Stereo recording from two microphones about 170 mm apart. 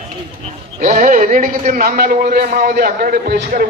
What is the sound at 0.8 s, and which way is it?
A man's voice, 50° right (ahead or behind).